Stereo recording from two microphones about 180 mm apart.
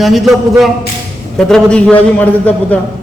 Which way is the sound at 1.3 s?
5° left (ahead or behind).